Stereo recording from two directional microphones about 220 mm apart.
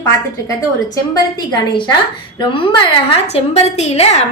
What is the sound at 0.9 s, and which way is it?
A woman's voice, 15° left (ahead or behind).